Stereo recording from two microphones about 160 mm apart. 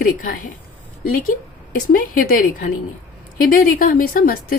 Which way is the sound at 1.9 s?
60° left (ahead or behind).